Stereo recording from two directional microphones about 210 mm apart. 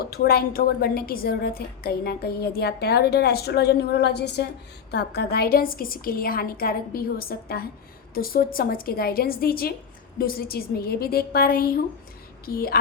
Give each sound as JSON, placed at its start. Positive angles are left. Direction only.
{"t": 0.0, "sound": "a woman's voice", "side_deg": 50}